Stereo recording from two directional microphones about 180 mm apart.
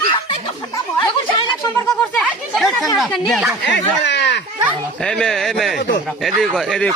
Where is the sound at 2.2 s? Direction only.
Centre (ahead or behind).